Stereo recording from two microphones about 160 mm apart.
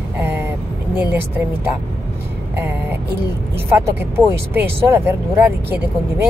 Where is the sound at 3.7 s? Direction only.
15° right (ahead or behind).